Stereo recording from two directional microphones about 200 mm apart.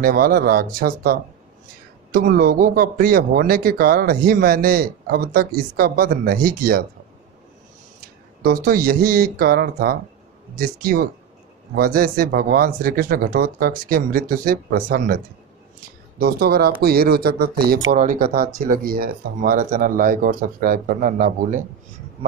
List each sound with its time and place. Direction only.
0.0 s speech: 45° right (ahead or behind)
2.1 s speech: 45° right (ahead or behind)
8.4 s speech: 45° right (ahead or behind)
16.2 s speech: 50° right (ahead or behind)